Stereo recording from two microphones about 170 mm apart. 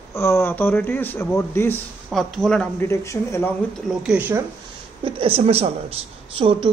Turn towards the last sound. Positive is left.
turn(degrees=-30)  # may be behind; listen again after turning